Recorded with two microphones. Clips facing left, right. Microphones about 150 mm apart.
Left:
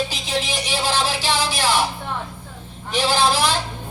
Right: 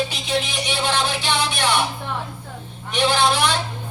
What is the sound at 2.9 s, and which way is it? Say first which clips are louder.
Speech: even; 35° left (ahead or behind).